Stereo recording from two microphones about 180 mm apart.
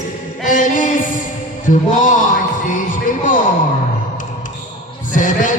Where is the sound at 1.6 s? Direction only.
45° left (ahead or behind).